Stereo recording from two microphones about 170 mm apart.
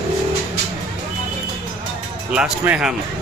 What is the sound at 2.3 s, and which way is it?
Speech, 5° right (ahead or behind).